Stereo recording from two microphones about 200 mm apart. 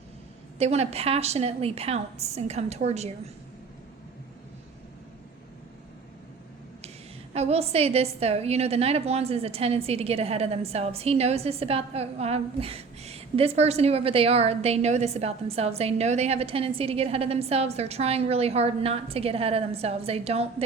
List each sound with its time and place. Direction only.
0.6 s a woman's voice: 30° right (ahead or behind)
7.3 s a woman's voice: 30° right (ahead or behind)